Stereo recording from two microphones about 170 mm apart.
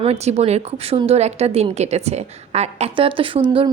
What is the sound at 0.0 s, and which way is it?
A woman's voice, 40° right (ahead or behind).